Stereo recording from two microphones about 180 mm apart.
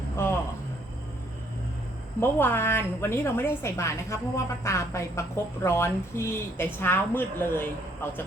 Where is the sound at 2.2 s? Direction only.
10° left (ahead or behind).